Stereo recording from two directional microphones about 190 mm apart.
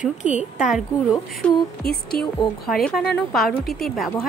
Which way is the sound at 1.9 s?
55° left (ahead or behind).